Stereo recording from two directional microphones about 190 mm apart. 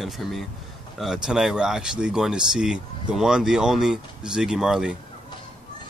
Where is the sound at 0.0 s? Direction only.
Centre (ahead or behind).